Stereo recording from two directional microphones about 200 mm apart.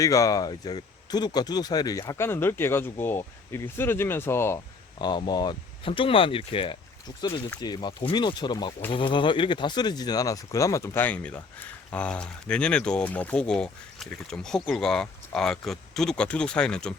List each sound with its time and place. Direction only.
0.0 s speech: 15° left (ahead or behind)